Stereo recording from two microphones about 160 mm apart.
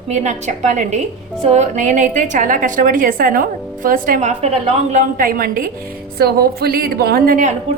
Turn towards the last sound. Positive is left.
turn(degrees=-60)  # may be behind; listen again after turning